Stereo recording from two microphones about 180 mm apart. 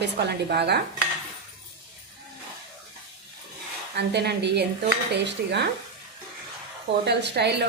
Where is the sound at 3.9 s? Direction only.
65° right (ahead or behind).